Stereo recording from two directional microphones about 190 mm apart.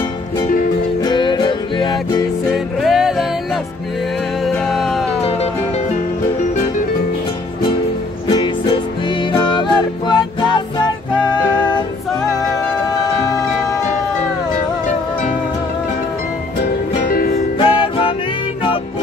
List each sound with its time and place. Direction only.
1.0 s music: 25° left (ahead or behind)
2.5 s music: centre (ahead or behind)
4.5 s music: centre (ahead or behind)
8.3 s music: 25° left (ahead or behind)
17.6 s music: 25° left (ahead or behind)